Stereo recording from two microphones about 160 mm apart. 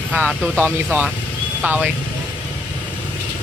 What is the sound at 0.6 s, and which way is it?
Speech, 10° right (ahead or behind).